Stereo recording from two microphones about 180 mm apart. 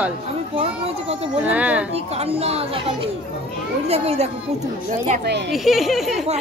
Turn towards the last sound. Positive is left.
turn(degrees=0)  # may be behind; listen again after turning